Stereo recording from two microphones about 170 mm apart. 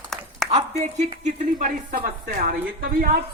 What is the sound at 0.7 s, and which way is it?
A woman's voice, 45° right (ahead or behind).